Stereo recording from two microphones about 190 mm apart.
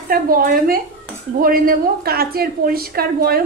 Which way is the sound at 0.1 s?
50° right (ahead or behind).